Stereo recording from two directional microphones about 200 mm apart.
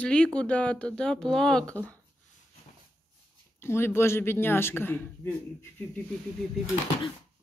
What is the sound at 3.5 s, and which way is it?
Speech, 10° left (ahead or behind).